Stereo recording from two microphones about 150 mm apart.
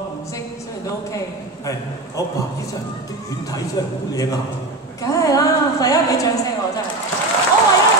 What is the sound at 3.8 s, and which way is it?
A man's voice, 25° left (ahead or behind).